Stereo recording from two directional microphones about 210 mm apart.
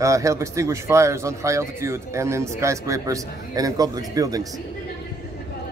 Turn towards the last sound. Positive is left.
turn(degrees=-15)  # may be behind; listen again after turning